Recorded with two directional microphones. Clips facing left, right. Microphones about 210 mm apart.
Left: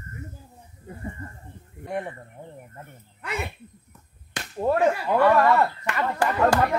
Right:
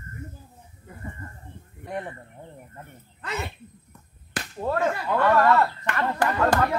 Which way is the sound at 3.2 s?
10° left (ahead or behind).